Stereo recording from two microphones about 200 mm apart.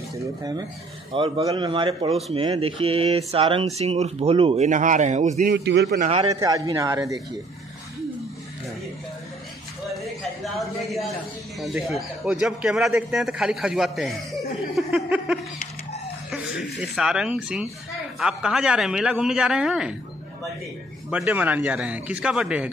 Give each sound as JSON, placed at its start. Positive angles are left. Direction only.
{"t": 0.4, "sound": "speech", "side_deg": -20}
{"t": 5.4, "sound": "a man's voice", "side_deg": -55}
{"t": 5.9, "sound": "speech", "side_deg": -30}
{"t": 6.4, "sound": "speech", "side_deg": -15}
{"t": 10.4, "sound": "a sound", "side_deg": 0}
{"t": 11.6, "sound": "a man's voice", "side_deg": -5}
{"t": 16.3, "sound": "a sound", "side_deg": -5}
{"t": 16.8, "sound": "a man's voice", "side_deg": 0}
{"t": 21.1, "sound": "a man's voice", "side_deg": -5}